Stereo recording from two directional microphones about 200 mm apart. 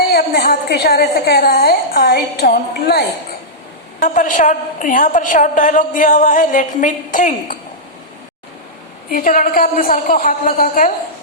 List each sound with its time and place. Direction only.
0.1 s a woman's voice: 50° left (ahead or behind)
4.0 s a woman's voice: 40° left (ahead or behind)
9.1 s a woman's voice: 45° left (ahead or behind)